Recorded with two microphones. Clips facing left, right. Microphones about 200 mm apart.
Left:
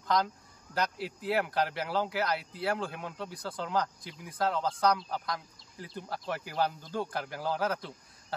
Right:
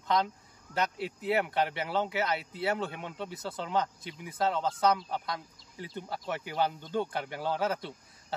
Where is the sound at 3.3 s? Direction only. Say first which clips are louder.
Right 1 dB; 25° right (ahead or behind).